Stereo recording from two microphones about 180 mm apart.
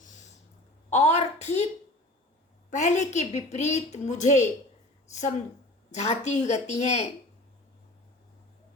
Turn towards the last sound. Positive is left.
turn(degrees=40)  # may be behind; listen again after turning